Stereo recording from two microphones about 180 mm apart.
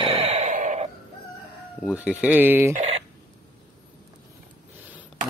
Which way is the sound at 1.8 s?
5° right (ahead or behind).